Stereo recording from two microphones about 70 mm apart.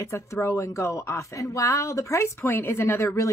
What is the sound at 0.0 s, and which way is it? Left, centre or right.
A woman's voice, left.